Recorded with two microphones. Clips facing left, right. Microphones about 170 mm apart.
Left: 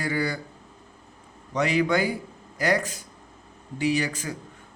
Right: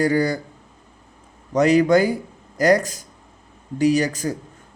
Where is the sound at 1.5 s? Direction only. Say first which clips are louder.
Right 8 dB; 40° right (ahead or behind).